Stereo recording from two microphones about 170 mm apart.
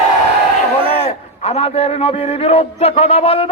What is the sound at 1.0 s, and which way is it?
A man's voice, 35° left (ahead or behind).